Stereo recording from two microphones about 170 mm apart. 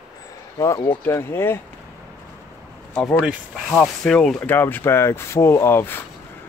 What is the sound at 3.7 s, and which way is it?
Speech, 5° left (ahead or behind).